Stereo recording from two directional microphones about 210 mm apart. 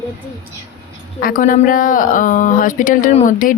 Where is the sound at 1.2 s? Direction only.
40° left (ahead or behind).